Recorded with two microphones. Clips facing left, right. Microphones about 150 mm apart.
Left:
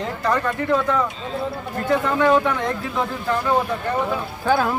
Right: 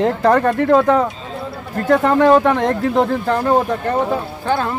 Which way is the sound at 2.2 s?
45° right (ahead or behind).